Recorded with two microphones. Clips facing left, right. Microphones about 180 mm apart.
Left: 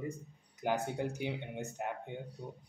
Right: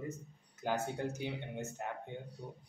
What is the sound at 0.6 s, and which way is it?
Speech, 15° left (ahead or behind).